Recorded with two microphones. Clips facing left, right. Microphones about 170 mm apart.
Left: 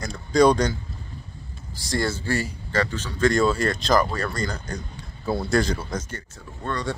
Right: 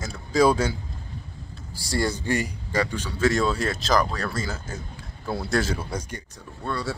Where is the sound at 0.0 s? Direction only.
5° right (ahead or behind).